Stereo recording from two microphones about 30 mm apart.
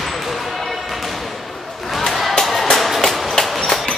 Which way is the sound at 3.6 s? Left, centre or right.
Left.